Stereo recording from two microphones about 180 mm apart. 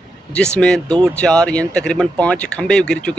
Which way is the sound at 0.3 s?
5° left (ahead or behind).